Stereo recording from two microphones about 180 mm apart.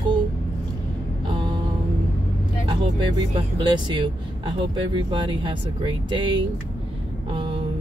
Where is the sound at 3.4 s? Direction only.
25° right (ahead or behind).